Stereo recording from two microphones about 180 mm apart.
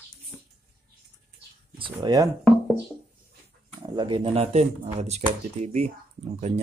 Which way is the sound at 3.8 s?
25° right (ahead or behind).